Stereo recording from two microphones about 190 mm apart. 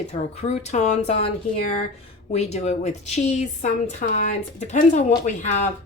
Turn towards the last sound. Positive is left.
turn(degrees=40)  # may be behind; listen again after turning